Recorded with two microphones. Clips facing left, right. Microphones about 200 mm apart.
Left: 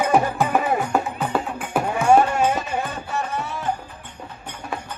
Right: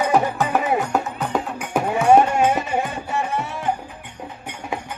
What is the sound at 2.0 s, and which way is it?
Music, 20° right (ahead or behind).